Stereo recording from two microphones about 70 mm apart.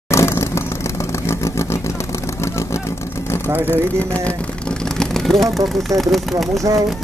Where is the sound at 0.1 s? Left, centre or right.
Left.